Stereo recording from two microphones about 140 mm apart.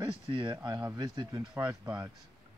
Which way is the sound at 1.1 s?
30° right (ahead or behind).